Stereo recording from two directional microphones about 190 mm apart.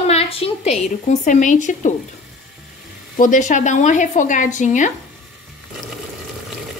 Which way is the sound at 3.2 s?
40° left (ahead or behind).